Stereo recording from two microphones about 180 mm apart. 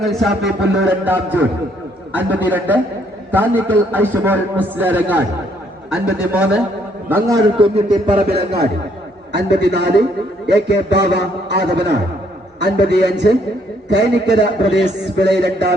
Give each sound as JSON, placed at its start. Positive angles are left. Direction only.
{"t": 0.0, "sound": "a man's voice", "side_deg": 0}
{"t": 7.1, "sound": "a man's voice", "side_deg": -15}
{"t": 7.6, "sound": "speech", "side_deg": -35}
{"t": 8.3, "sound": "a man's voice", "side_deg": -60}